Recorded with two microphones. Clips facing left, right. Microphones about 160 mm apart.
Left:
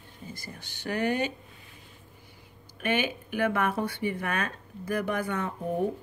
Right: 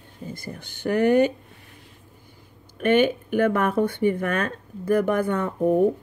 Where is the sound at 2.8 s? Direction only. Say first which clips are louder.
Right 10 dB; 55° right (ahead or behind).